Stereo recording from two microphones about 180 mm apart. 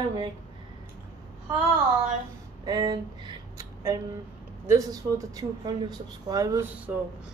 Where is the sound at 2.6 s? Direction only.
20° right (ahead or behind).